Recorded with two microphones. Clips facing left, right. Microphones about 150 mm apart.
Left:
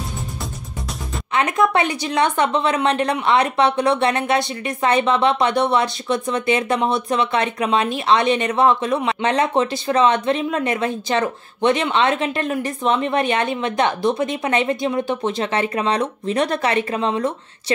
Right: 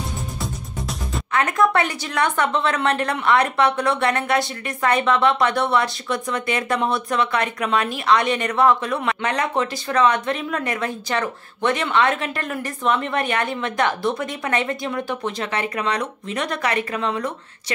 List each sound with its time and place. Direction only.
0.4 s music: centre (ahead or behind)
1.3 s a woman's voice: 20° left (ahead or behind)